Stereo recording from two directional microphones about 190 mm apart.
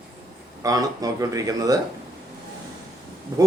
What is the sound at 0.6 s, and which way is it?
Speech, 20° right (ahead or behind).